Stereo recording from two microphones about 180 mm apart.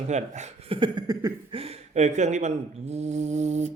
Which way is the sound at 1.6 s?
35° right (ahead or behind).